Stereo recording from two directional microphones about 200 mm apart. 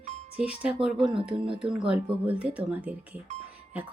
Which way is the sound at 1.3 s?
25° right (ahead or behind).